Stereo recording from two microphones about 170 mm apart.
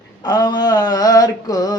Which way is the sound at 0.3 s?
25° left (ahead or behind).